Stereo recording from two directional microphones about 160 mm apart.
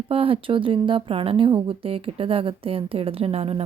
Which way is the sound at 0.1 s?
35° right (ahead or behind).